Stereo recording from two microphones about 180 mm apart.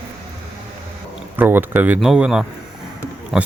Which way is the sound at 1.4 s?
10° right (ahead or behind).